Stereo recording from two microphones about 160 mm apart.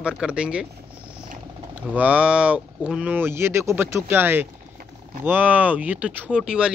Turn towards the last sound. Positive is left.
turn(degrees=-5)  # may be behind; listen again after turning